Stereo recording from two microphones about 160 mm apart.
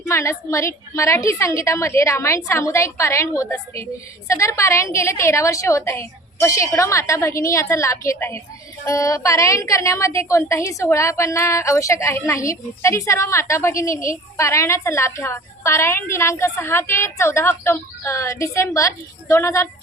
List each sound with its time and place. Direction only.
0.0 s a woman's voice: 20° left (ahead or behind)